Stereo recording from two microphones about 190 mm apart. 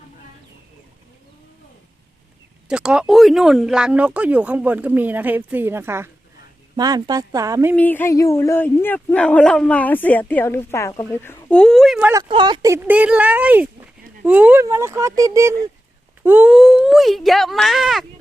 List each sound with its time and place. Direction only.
2.6 s speech: 5° right (ahead or behind)
7.8 s speech: 10° left (ahead or behind)
12.1 s speech: 25° right (ahead or behind); by 18.0 s centre (ahead or behind)